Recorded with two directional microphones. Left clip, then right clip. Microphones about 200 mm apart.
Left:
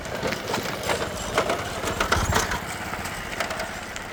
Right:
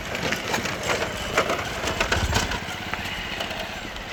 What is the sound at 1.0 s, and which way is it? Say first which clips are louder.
Clip-clop: right 1 dB; 30° right (ahead or behind).